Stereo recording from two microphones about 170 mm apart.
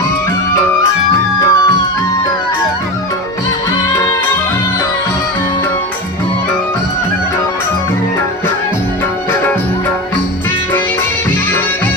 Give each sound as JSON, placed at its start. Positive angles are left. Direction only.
{"t": 0.5, "sound": "music", "side_deg": 15}